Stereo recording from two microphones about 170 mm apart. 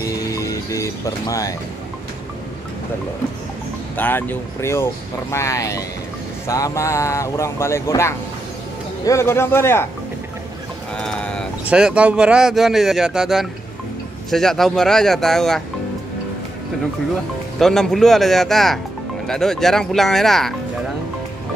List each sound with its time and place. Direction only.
0.0 s music: 20° left (ahead or behind)
3.9 s speech: 10° left (ahead or behind)
11.0 s sheep: 5° left (ahead or behind)
11.6 s speech: 5° right (ahead or behind)
17.6 s speech: centre (ahead or behind)